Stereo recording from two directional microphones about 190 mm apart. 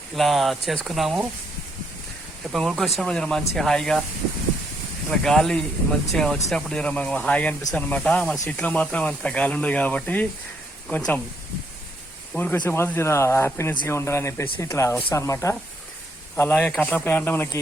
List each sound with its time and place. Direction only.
0.2 s speech: centre (ahead or behind)
2.5 s speech: centre (ahead or behind)
5.0 s speech: centre (ahead or behind)
12.3 s speech: 10° left (ahead or behind)